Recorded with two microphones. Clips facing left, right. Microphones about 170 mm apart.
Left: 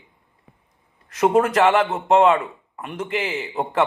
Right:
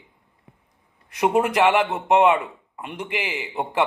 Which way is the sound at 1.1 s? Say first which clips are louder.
Left 3 dB; 15° right (ahead or behind).